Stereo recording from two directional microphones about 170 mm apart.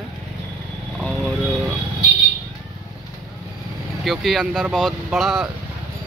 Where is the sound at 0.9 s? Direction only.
Centre (ahead or behind).